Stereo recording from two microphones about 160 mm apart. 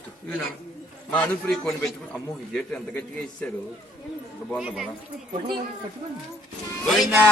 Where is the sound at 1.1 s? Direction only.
5° left (ahead or behind).